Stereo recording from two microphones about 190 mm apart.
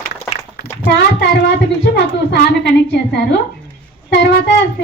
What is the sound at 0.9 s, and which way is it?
Speech, 65° left (ahead or behind).